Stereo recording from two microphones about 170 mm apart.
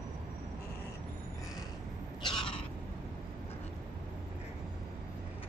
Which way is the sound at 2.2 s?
30° left (ahead or behind).